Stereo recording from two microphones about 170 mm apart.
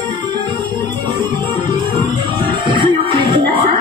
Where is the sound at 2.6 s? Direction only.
30° right (ahead or behind).